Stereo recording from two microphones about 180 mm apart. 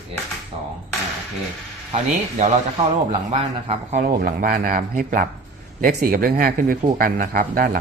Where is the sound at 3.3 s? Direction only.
40° right (ahead or behind).